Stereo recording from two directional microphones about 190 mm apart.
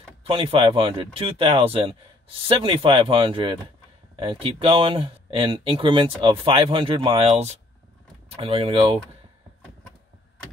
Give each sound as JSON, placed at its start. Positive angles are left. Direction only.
{"t": 0.2, "sound": "speech", "side_deg": -30}